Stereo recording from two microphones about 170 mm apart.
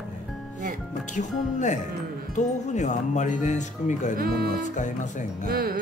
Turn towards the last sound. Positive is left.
turn(degrees=-60)  # may be behind; listen again after turning